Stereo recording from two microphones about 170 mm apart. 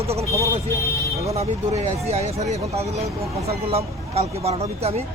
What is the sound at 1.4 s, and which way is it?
Speech, 40° right (ahead or behind).